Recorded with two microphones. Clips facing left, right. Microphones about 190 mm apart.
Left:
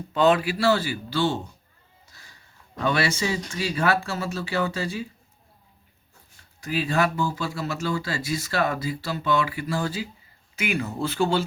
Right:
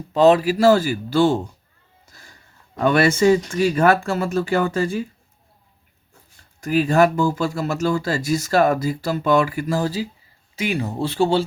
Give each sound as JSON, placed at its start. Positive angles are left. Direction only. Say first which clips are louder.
{"t": 0.1, "sound": "speech", "louder": "right 6 dB", "side_deg": -35}
{"t": 2.0, "sound": "a sound", "louder": "right 6 dB", "side_deg": -45}
{"t": 2.7, "sound": "speech", "louder": "right 7 dB", "side_deg": -50}
{"t": 6.6, "sound": "speech", "louder": "right 8 dB", "side_deg": -45}